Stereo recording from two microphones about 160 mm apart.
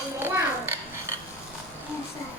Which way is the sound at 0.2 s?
15° right (ahead or behind).